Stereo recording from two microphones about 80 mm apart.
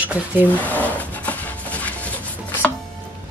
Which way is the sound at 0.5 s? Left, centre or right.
Centre.